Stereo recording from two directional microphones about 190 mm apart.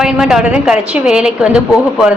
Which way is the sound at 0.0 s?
5° right (ahead or behind).